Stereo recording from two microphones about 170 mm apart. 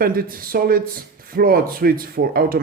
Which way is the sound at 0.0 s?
60° right (ahead or behind).